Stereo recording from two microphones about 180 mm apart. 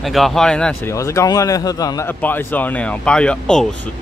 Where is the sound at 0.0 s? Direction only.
Centre (ahead or behind).